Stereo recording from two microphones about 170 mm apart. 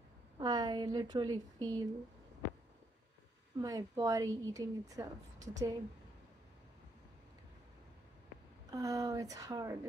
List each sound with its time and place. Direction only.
0.4 s a woman's voice: 25° right (ahead or behind)
3.5 s a woman's voice: 25° right (ahead or behind)
8.7 s a woman's voice: 20° right (ahead or behind)